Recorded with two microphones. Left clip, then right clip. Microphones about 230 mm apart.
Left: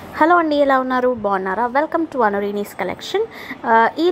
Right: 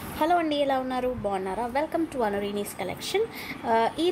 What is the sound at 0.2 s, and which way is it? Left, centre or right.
A woman's voice, centre.